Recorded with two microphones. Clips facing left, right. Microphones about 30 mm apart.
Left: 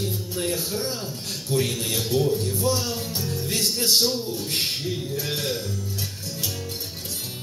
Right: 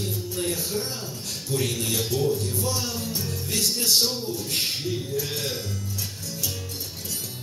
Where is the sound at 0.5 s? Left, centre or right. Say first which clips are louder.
Left 2 dB; left.